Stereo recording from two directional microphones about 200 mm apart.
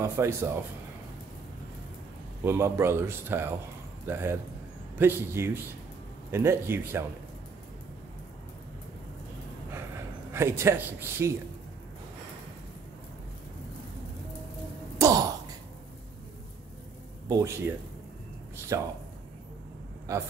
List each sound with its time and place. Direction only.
0.0 s speech: 15° right (ahead or behind)
2.4 s speech: 10° right (ahead or behind)
10.3 s speech: 10° right (ahead or behind)
15.0 s a sound: 15° right (ahead or behind)
17.3 s speech: 20° right (ahead or behind)
20.1 s speech: 15° right (ahead or behind)